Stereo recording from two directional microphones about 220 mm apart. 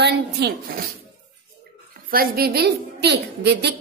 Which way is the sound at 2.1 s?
40° right (ahead or behind).